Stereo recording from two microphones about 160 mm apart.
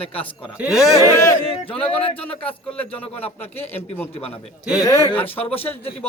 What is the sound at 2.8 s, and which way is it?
Speech, 10° left (ahead or behind).